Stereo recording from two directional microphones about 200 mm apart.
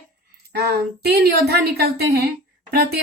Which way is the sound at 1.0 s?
55° right (ahead or behind).